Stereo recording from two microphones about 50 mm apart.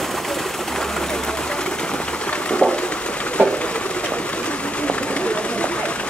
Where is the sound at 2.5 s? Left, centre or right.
Centre.